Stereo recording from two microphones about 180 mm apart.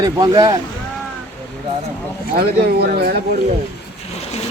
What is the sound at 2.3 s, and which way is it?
Speech, 55° right (ahead or behind).